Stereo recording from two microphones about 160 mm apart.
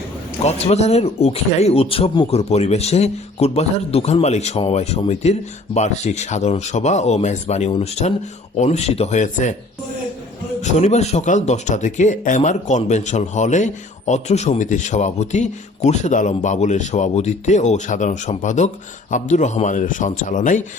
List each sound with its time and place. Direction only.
0.4 s speech: 40° left (ahead or behind)
10.6 s speech: 45° left (ahead or behind)